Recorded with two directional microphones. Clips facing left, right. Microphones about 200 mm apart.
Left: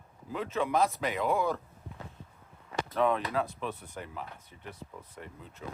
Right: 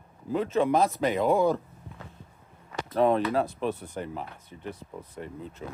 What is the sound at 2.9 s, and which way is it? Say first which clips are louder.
Speech: right 6 dB; 35° right (ahead or behind).